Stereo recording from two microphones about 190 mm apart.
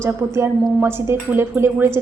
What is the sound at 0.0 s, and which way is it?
A woman's voice, 15° right (ahead or behind).